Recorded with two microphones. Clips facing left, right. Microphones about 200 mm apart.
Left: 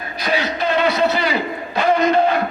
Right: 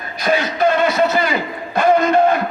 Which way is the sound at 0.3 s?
50° right (ahead or behind).